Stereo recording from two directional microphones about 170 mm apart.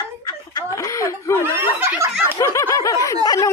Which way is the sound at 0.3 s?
25° left (ahead or behind).